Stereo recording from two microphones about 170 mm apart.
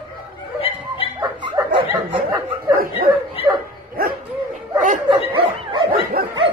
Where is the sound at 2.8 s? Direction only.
60° right (ahead or behind).